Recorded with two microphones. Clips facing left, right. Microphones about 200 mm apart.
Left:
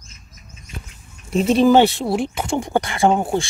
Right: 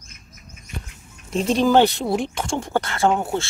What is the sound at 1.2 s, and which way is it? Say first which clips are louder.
Speech: left 4 dB; 5° left (ahead or behind).